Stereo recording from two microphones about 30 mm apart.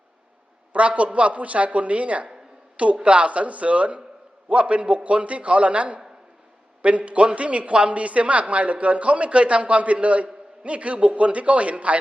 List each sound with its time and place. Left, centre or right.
0.7 s a woman's voice: right
2.9 s a woman's voice: right